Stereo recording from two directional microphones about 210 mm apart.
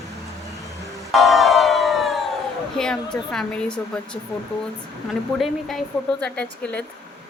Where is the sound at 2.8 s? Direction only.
5° left (ahead or behind).